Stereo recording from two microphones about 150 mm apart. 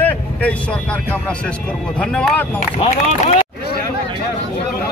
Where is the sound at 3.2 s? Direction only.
40° left (ahead or behind).